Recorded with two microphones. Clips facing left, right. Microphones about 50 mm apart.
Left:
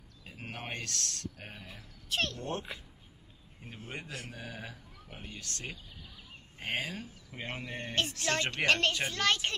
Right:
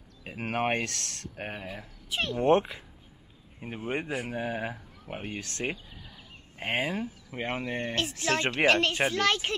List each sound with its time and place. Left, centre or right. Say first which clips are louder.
0.2 s speech: right 13 dB; right
0.7 s speech: right 6 dB; right
2.0 s a child's voice: right 10 dB; centre
3.6 s a child's voice: right 11 dB; right; by 9.6 s centre